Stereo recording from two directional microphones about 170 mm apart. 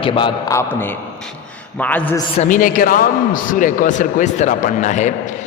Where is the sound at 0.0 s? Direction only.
30° left (ahead or behind); by 2.1 s 10° left (ahead or behind).